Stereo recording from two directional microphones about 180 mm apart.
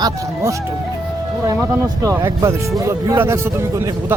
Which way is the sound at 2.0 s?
15° right (ahead or behind).